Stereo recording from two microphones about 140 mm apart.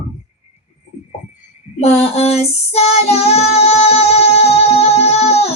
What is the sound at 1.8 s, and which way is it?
Music, 50° left (ahead or behind).